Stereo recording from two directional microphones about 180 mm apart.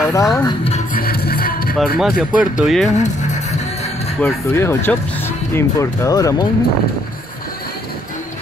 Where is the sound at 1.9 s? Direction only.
Centre (ahead or behind).